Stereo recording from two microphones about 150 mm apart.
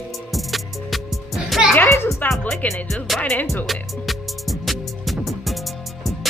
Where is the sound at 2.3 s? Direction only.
10° left (ahead or behind).